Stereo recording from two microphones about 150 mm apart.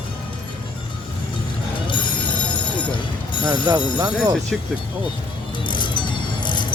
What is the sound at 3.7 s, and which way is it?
Speech, 25° right (ahead or behind).